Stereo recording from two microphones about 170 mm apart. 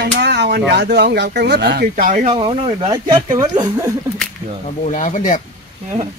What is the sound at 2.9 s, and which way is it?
Speech, 20° right (ahead or behind).